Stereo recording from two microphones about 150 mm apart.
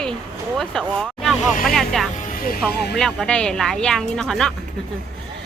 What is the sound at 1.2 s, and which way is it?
Vehicle, centre (ahead or behind).